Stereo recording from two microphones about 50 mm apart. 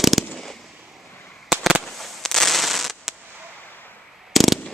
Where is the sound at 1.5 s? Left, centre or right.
Centre.